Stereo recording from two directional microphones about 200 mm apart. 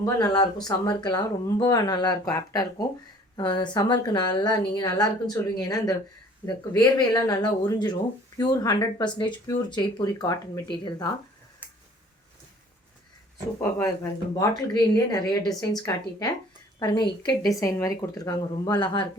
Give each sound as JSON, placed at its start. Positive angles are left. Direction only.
{"t": 0.0, "sound": "speech", "side_deg": 20}
{"t": 13.6, "sound": "a woman's voice", "side_deg": 15}